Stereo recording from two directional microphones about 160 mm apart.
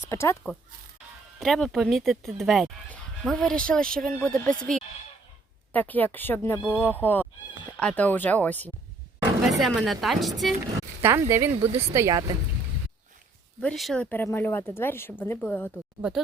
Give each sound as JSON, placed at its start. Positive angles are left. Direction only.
{"t": 0.1, "sound": "speech", "side_deg": 15}
{"t": 1.4, "sound": "speech", "side_deg": 5}
{"t": 9.5, "sound": "speech", "side_deg": 0}
{"t": 11.0, "sound": "speech", "side_deg": -15}
{"t": 11.7, "sound": "speech", "side_deg": -40}
{"t": 11.9, "sound": "speech", "side_deg": -20}
{"t": 13.6, "sound": "speech", "side_deg": 5}
{"t": 16.0, "sound": "speech", "side_deg": -5}